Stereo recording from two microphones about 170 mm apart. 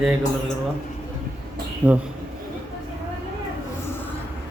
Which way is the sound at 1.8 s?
10° right (ahead or behind).